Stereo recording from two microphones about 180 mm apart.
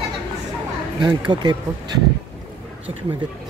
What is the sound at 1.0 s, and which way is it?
Speech, 25° right (ahead or behind).